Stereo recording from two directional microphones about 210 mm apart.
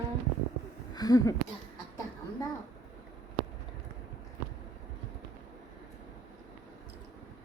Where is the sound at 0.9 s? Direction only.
15° left (ahead or behind).